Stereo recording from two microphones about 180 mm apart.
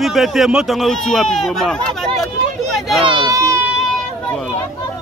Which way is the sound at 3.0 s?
20° right (ahead or behind).